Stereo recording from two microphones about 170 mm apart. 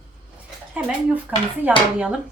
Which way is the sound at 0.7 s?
10° right (ahead or behind).